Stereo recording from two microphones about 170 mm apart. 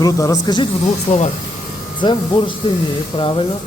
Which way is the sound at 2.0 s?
30° left (ahead or behind).